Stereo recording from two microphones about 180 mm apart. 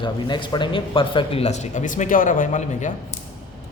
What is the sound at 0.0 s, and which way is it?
Speech, 25° left (ahead or behind).